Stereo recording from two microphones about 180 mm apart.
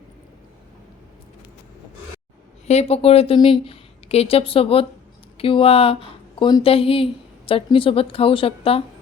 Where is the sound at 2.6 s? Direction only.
35° left (ahead or behind).